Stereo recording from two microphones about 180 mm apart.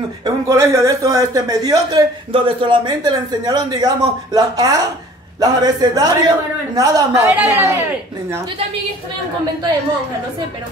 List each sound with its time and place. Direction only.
0.2 s speech: 15° right (ahead or behind)